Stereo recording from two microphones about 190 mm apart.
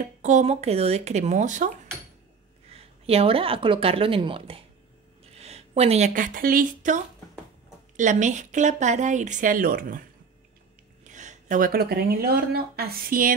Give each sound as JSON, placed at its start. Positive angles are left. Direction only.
{"t": 0.0, "sound": "speech", "side_deg": -40}
{"t": 2.7, "sound": "a woman's voice", "side_deg": -30}
{"t": 11.1, "sound": "speech", "side_deg": -40}